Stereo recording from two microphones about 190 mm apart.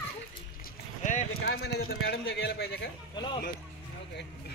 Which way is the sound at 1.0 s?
40° left (ahead or behind).